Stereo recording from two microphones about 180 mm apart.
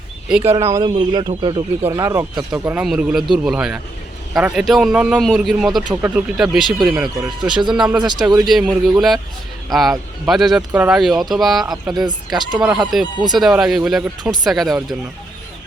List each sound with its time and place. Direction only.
0.3 s speech: 5° right (ahead or behind)
0.5 s speech: 20° right (ahead or behind)
2.5 s speech: 5° right (ahead or behind)
5.9 s speech: 15° right (ahead or behind)
6.3 s speech: centre (ahead or behind)
7.9 s speech: 25° right (ahead or behind)
8.4 s speech: centre (ahead or behind)
12.0 s speech: 25° right (ahead or behind)
13.3 s speech: centre (ahead or behind)